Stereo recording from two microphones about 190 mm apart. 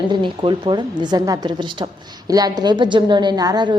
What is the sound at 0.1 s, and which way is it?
A woman's voice, 25° right (ahead or behind).